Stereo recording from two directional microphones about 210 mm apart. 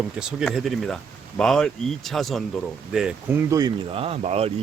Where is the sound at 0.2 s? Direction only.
5° right (ahead or behind).